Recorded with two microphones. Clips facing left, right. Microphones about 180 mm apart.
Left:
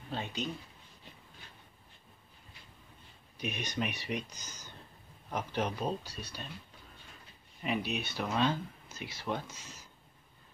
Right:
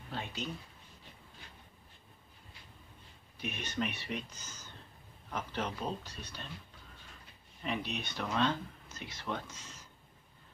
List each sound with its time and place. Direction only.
0.1 s speech: 20° left (ahead or behind)
3.3 s speech: 15° left (ahead or behind)
7.6 s speech: 10° left (ahead or behind)